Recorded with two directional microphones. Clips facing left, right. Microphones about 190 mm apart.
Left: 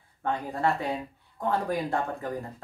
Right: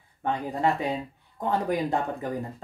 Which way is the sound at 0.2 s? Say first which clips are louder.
Right 2 dB; 20° right (ahead or behind).